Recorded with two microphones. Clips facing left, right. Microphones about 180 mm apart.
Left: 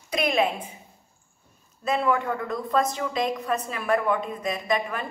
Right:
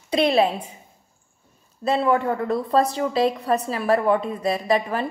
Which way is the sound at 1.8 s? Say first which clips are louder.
Right 4 dB; 30° right (ahead or behind).